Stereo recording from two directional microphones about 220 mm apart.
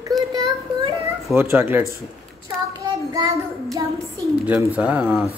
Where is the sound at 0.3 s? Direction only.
20° right (ahead or behind).